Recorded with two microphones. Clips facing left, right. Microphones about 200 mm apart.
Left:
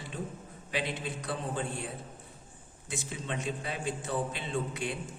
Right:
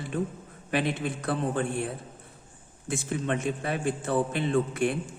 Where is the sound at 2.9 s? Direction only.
55° right (ahead or behind).